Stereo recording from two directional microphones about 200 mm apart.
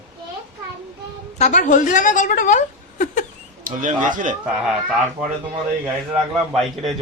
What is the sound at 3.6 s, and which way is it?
Speech, 40° right (ahead or behind).